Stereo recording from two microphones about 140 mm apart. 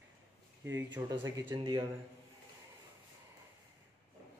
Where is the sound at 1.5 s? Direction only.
35° right (ahead or behind).